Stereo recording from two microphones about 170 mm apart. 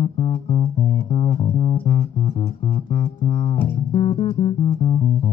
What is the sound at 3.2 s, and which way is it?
Music, 40° left (ahead or behind).